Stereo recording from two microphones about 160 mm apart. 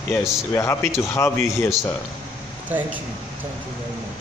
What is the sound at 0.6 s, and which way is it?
A man's voice, 20° left (ahead or behind).